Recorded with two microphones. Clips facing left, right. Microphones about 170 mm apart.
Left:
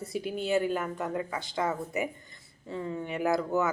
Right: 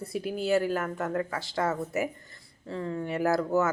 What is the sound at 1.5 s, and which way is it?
Speech, 15° left (ahead or behind).